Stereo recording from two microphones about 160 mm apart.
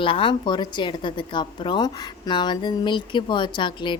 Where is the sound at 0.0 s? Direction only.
35° left (ahead or behind).